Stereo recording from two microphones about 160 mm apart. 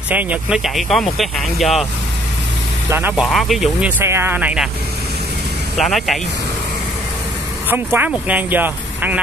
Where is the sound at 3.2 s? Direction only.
Centre (ahead or behind).